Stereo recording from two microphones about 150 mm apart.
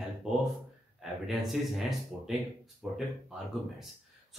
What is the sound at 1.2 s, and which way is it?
A man's voice, centre (ahead or behind).